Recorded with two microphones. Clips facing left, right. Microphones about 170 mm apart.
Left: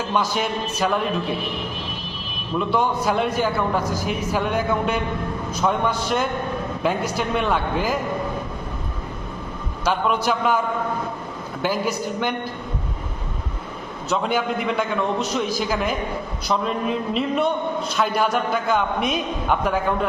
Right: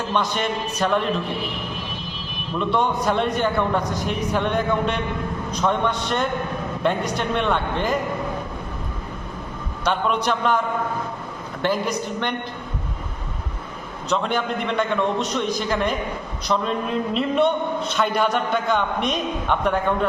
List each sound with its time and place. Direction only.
0.1 s a man's voice: 5° left (ahead or behind)
2.6 s a man's voice: 5° left (ahead or behind)
9.8 s a man's voice: 5° left (ahead or behind)
11.6 s a man's voice: 5° left (ahead or behind)
14.1 s a man's voice: 5° left (ahead or behind)